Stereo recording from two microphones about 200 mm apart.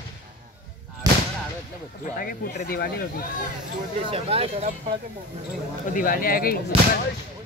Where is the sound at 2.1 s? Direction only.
45° left (ahead or behind).